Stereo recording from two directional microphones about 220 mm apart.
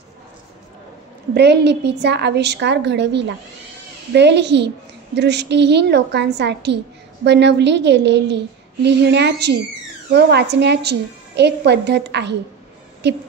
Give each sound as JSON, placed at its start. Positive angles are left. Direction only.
{"t": 1.3, "sound": "a woman's voice", "side_deg": -50}